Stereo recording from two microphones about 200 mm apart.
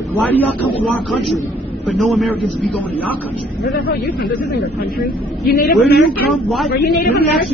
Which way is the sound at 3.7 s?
50° left (ahead or behind).